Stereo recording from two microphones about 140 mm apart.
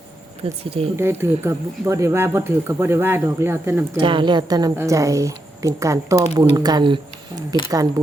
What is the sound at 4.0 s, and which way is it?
A woman's voice, 35° right (ahead or behind).